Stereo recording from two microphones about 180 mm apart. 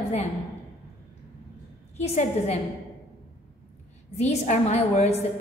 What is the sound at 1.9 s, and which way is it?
Speech, 35° left (ahead or behind).